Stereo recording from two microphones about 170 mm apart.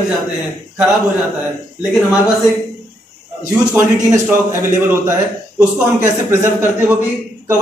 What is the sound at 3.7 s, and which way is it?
A man's voice, 15° right (ahead or behind).